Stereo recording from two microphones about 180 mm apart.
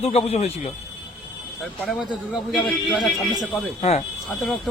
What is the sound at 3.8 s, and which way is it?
Speech, 35° left (ahead or behind).